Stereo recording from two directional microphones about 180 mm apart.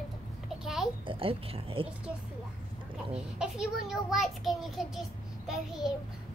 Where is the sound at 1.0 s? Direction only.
30° right (ahead or behind).